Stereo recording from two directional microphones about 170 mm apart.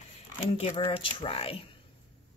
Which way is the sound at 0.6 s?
30° left (ahead or behind).